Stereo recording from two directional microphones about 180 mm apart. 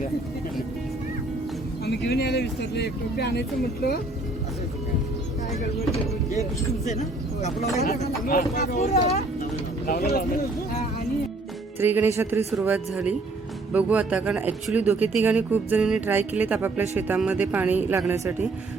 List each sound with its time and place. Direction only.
1.8 s speech: 65° left (ahead or behind)
8.3 s speech: 40° left (ahead or behind)
9.4 s a sound: 55° left (ahead or behind)
11.8 s speech: 10° right (ahead or behind)